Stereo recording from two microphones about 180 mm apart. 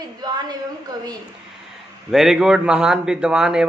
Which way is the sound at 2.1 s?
Centre (ahead or behind).